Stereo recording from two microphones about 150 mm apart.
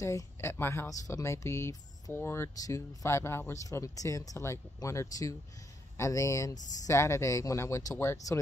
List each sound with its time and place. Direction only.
0.0 s speech: 20° left (ahead or behind)